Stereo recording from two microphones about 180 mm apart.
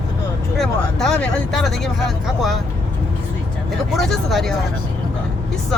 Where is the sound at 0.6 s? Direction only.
Centre (ahead or behind).